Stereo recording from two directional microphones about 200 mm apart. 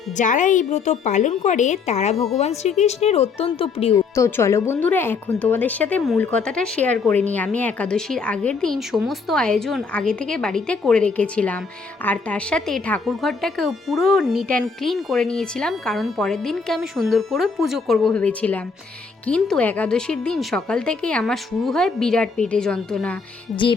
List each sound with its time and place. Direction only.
0.2 s a woman's voice: 40° left (ahead or behind)
3.9 s speech: 15° left (ahead or behind)